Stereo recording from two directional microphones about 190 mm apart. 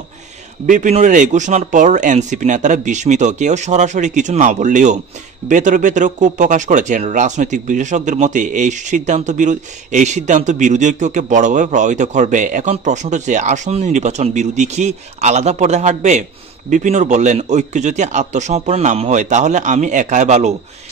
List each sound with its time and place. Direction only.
0.7 s speech: 40° right (ahead or behind)